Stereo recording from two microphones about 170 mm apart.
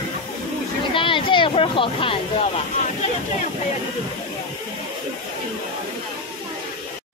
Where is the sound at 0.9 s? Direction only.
30° left (ahead or behind).